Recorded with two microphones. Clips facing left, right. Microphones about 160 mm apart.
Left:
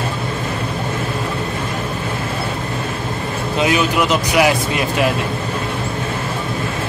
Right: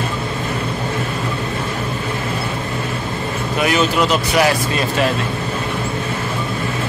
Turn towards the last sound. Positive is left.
turn(degrees=10)  # may be behind; listen again after turning